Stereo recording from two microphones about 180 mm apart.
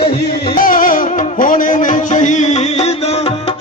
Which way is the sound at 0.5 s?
50° left (ahead or behind).